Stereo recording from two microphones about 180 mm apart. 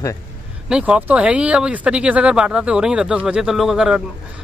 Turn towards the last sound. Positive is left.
turn(degrees=-5)  # may be behind; listen again after turning